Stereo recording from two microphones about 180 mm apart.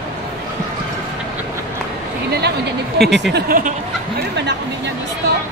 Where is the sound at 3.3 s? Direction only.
50° right (ahead or behind).